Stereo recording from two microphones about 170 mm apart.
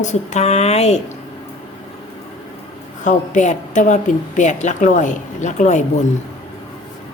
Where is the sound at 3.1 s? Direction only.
45° left (ahead or behind).